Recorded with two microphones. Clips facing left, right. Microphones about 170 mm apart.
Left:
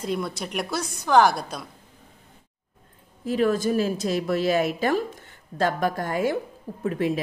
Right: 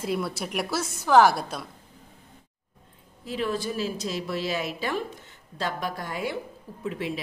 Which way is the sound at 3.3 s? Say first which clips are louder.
Left 7 dB; 45° left (ahead or behind).